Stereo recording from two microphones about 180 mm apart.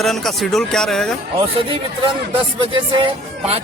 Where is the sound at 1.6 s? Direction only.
30° right (ahead or behind).